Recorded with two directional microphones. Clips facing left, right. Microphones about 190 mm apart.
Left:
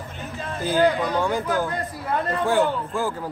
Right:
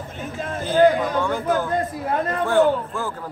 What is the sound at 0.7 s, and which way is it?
Speech, 50° right (ahead or behind).